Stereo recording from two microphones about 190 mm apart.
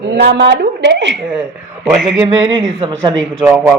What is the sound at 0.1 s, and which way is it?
A woman's voice, 65° right (ahead or behind).